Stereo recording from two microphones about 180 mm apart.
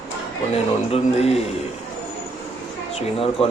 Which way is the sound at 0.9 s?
35° left (ahead or behind).